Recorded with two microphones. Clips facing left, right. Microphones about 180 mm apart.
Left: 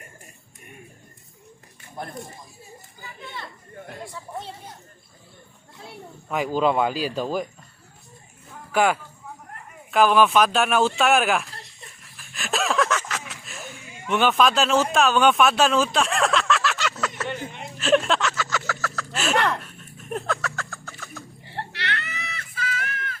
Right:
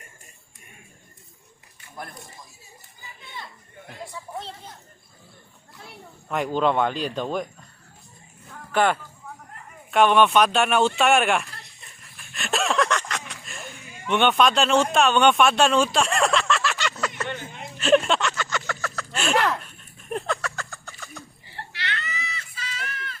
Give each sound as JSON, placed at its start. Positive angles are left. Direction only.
{"t": 6.2, "sound": "speech", "side_deg": 5}
{"t": 8.7, "sound": "speech", "side_deg": 10}
{"t": 12.1, "sound": "a sound", "side_deg": 0}
{"t": 21.4, "sound": "screaming", "side_deg": 60}